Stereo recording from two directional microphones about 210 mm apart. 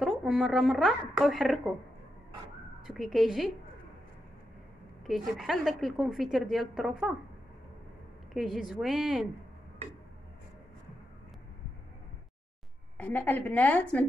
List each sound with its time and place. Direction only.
0.0 s a woman's voice: centre (ahead or behind)
2.9 s a woman's voice: centre (ahead or behind)
5.0 s a woman's voice: centre (ahead or behind)
8.3 s a woman's voice: centre (ahead or behind)
12.9 s a woman's voice: 10° left (ahead or behind)